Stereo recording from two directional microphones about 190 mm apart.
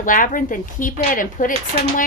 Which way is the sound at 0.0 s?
45° left (ahead or behind).